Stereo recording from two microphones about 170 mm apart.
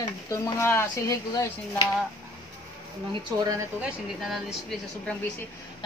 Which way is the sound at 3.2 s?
20° right (ahead or behind).